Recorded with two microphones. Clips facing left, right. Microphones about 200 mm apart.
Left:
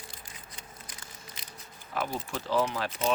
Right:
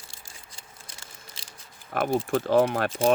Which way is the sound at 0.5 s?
25° right (ahead or behind).